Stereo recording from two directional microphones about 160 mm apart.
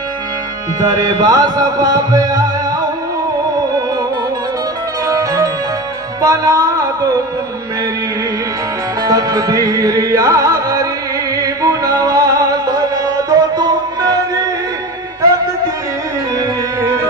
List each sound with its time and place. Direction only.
0.7 s music: 25° right (ahead or behind)
5.0 s music: 20° right (ahead or behind)
9.0 s music: 25° right (ahead or behind)